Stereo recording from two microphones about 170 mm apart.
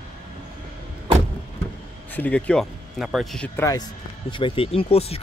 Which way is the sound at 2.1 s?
10° left (ahead or behind).